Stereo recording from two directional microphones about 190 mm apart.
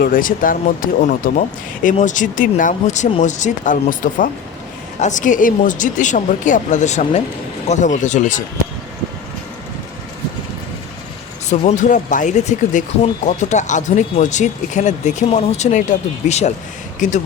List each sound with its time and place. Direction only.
0.0 s speech: 45° left (ahead or behind)
11.4 s speech: 40° left (ahead or behind)